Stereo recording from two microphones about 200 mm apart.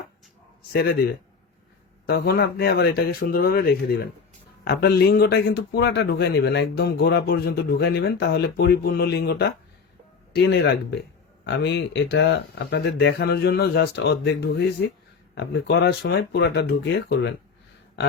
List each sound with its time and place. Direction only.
0.7 s a man's voice: 55° left (ahead or behind)